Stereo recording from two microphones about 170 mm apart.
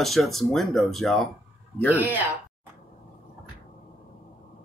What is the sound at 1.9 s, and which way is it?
Speech, 10° right (ahead or behind).